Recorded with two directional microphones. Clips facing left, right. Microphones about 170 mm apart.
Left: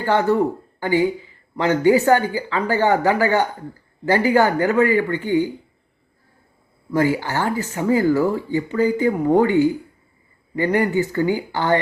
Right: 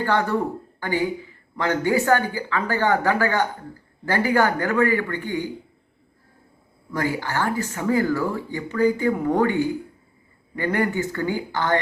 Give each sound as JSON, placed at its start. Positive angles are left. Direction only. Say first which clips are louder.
{"t": 0.0, "sound": "speech", "louder": "left 4 dB", "side_deg": 20}
{"t": 6.9, "sound": "speech", "louder": "left 5 dB", "side_deg": 15}